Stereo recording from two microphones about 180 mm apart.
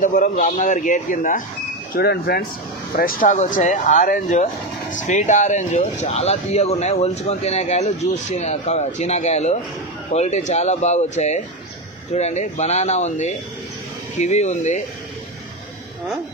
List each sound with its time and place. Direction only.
0.0 s speech: 45° left (ahead or behind)
2.0 s speech: 60° left (ahead or behind); by 14.8 s 40° left (ahead or behind)